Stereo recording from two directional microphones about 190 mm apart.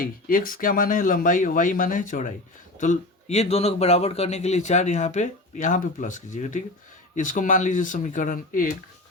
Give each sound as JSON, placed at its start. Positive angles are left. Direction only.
{"t": 0.0, "sound": "speech", "side_deg": 45}